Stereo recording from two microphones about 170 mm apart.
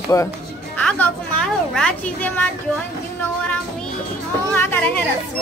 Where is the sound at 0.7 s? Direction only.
10° left (ahead or behind).